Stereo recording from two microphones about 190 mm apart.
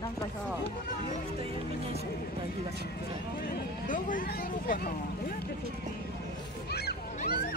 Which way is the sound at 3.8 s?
45° left (ahead or behind).